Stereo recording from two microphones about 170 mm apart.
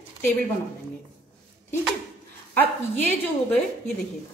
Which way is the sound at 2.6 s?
10° left (ahead or behind).